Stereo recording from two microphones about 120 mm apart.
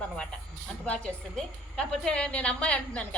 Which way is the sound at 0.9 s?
10° left (ahead or behind).